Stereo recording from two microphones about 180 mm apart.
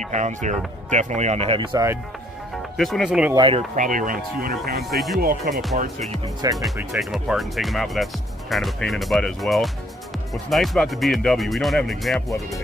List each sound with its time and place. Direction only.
0.1 s speech: 40° right (ahead or behind); by 1.9 s 25° right (ahead or behind)
2.8 s speech: centre (ahead or behind)
3.3 s speech: 30° right (ahead or behind)
3.7 s speech: 45° right (ahead or behind)
4.8 s speech: centre (ahead or behind)
5.2 s speech: 55° right (ahead or behind)
5.8 s speech: 40° right (ahead or behind)
6.6 s speech: centre (ahead or behind)